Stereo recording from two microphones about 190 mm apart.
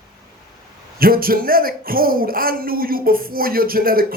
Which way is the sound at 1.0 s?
50° right (ahead or behind).